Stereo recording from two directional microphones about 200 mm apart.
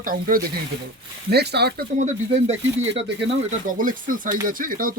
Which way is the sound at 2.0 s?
30° right (ahead or behind).